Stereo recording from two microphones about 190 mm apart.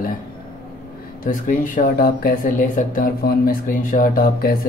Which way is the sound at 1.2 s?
45° left (ahead or behind).